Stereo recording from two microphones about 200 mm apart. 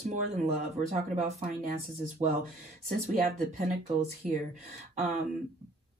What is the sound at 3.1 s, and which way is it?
Speech, 40° right (ahead or behind).